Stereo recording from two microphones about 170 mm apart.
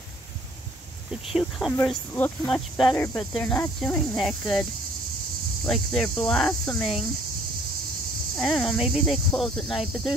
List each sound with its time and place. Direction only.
1.7 s speech: 10° left (ahead or behind)
3.3 s cricket: 10° left (ahead or behind)
5.7 s cricket: 5° left (ahead or behind)
8.4 s cricket: centre (ahead or behind)